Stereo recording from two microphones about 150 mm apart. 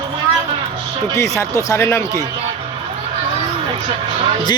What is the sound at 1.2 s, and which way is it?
Speech, 20° left (ahead or behind).